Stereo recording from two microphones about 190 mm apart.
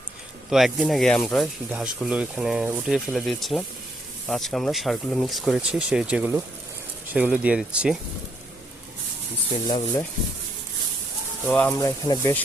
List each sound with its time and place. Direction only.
0.5 s speech: centre (ahead or behind)
9.6 s speech: 20° left (ahead or behind)
11.4 s speech: 10° left (ahead or behind)